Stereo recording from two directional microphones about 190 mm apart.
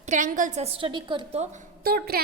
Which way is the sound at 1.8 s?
55° right (ahead or behind).